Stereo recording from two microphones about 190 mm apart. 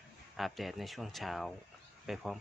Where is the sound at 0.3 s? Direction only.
Centre (ahead or behind).